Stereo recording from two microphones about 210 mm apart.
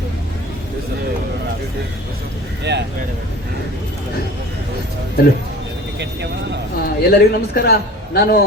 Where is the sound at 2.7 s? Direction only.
55° right (ahead or behind).